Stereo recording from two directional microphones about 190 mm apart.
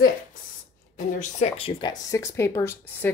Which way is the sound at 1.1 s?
35° left (ahead or behind).